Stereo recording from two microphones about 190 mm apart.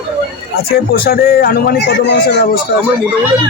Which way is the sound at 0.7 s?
55° left (ahead or behind).